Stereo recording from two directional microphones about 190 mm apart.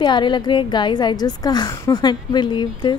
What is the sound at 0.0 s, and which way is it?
A woman's voice, 25° left (ahead or behind).